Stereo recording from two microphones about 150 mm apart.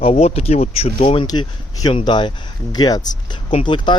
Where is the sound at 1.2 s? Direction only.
25° left (ahead or behind).